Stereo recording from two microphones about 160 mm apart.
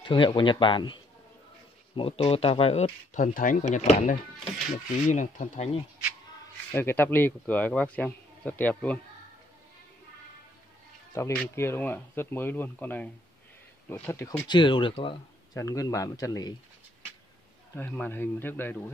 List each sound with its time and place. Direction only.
0.0 s speech: 30° left (ahead or behind)
3.3 s speech: 55° left (ahead or behind)
6.7 s speech: 15° left (ahead or behind)
11.5 s speech: 15° left (ahead or behind)
14.5 s speech: 30° left (ahead or behind)
17.7 s speech: 10° left (ahead or behind)